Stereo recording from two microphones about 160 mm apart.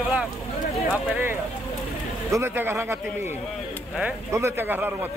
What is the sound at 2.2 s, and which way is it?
Speech, 15° right (ahead or behind).